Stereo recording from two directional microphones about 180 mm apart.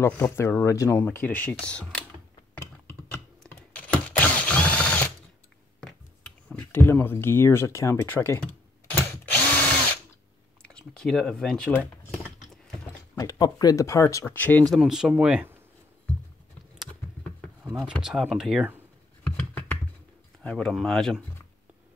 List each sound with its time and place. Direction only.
0.0 s speech: 15° left (ahead or behind)
3.1 s drill: 10° left (ahead or behind)
5.8 s a sound: 5° left (ahead or behind)
10.6 s speech: 5° left (ahead or behind)
13.2 s speech: 20° left (ahead or behind)
14.7 s speech: 5° right (ahead or behind)
17.7 s speech: 5° right (ahead or behind)
19.2 s computer keyboard: 10° left (ahead or behind)
20.4 s speech: 5° left (ahead or behind)